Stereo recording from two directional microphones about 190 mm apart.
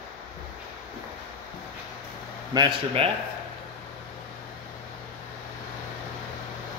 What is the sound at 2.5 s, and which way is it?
Speech, 25° right (ahead or behind).